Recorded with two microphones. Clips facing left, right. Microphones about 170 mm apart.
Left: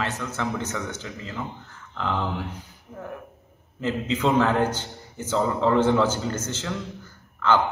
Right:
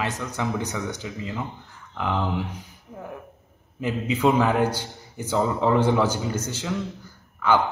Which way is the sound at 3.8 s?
10° right (ahead or behind).